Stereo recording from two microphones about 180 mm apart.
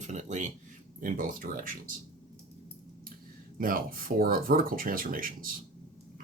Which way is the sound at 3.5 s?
50° right (ahead or behind).